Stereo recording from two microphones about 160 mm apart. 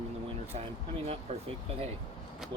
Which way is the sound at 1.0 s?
35° right (ahead or behind).